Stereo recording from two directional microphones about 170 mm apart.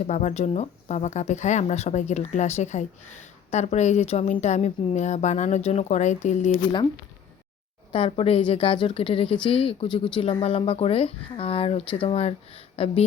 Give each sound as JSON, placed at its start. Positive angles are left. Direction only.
{"t": 0.1, "sound": "speech", "side_deg": 45}
{"t": 7.9, "sound": "a woman's voice", "side_deg": 30}